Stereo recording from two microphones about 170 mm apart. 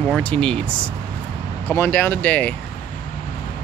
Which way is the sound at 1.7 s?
10° left (ahead or behind).